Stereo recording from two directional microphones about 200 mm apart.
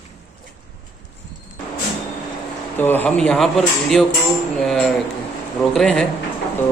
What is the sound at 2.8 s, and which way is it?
Speech, 10° left (ahead or behind).